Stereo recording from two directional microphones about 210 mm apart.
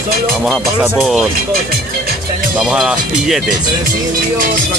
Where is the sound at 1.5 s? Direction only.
45° right (ahead or behind).